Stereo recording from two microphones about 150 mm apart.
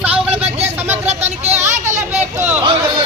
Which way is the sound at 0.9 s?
45° right (ahead or behind).